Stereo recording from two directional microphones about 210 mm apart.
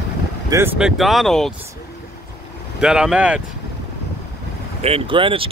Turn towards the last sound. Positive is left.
turn(degrees=-25)  # may be behind; listen again after turning